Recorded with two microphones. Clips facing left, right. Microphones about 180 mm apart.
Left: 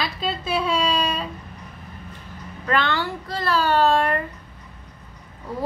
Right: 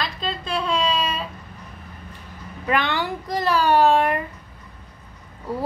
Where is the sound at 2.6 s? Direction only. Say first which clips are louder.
Even; 15° right (ahead or behind).